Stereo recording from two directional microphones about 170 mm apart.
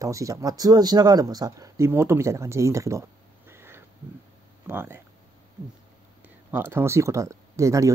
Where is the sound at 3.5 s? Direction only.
15° right (ahead or behind).